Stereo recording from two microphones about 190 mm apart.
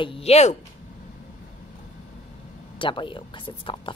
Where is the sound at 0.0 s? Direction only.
30° left (ahead or behind).